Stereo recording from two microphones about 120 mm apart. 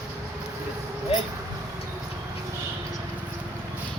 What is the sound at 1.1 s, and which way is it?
Vehicle, 55° left (ahead or behind).